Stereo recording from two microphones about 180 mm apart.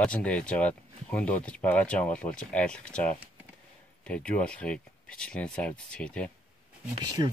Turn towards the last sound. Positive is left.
turn(degrees=-25)  # may be behind; listen again after turning